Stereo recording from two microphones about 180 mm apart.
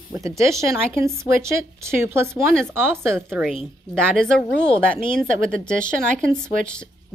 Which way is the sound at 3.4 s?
5° left (ahead or behind).